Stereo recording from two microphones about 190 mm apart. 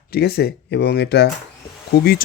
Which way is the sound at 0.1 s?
55° left (ahead or behind).